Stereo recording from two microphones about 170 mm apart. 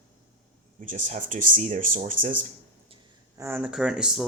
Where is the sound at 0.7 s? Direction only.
50° right (ahead or behind).